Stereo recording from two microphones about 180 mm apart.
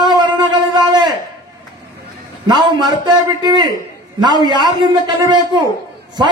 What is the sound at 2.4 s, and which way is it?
A man's voice, 25° right (ahead or behind).